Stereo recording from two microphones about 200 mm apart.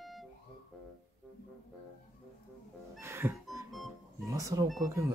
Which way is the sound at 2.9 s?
10° right (ahead or behind).